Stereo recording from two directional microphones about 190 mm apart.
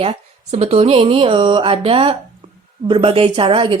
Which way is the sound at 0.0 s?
35° right (ahead or behind).